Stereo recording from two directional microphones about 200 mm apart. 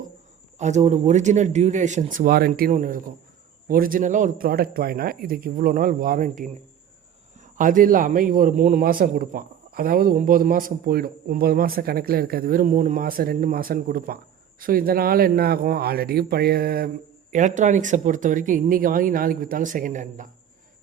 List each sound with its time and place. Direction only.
0.6 s a man's voice: 35° right (ahead or behind)
17.3 s speech: 35° right (ahead or behind)